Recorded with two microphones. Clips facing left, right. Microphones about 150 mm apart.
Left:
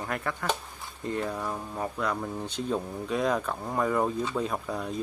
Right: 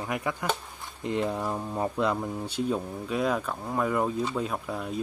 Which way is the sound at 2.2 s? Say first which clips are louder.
Right 2 dB; 10° right (ahead or behind).